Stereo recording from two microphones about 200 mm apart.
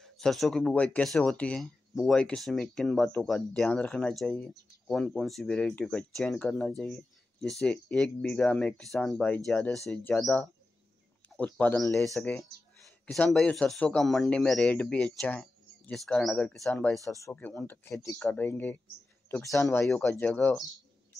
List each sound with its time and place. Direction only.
0.0 s speech: centre (ahead or behind)
17.1 s speech: 10° left (ahead or behind)
19.9 s speech: 5° left (ahead or behind)